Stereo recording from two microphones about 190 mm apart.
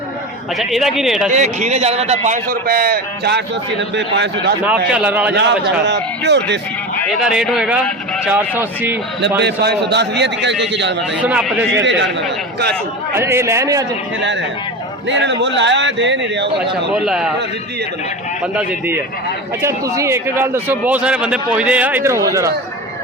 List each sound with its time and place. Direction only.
0.6 s a man's voice: centre (ahead or behind)
1.3 s a man's voice: 40° right (ahead or behind); by 4.5 s 65° right (ahead or behind)
4.9 s speech: 5° right (ahead or behind)
5.3 s a man's voice: 65° right (ahead or behind)
7.3 s a man's voice: 5° right (ahead or behind)
9.4 s a man's voice: 65° right (ahead or behind)
11.2 s speech: 5° right (ahead or behind)
11.7 s a man's voice: 70° right (ahead or behind)
13.1 s speech: 15° right (ahead or behind)
15.1 s a man's voice: 70° right (ahead or behind)
16.9 s a man's voice: 5° right (ahead or behind)
18.5 s speech: 10° right (ahead or behind)